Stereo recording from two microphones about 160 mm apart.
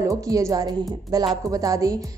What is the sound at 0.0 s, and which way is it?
A woman's voice, 20° right (ahead or behind).